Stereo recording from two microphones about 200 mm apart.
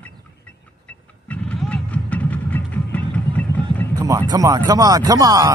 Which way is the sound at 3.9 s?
15° right (ahead or behind).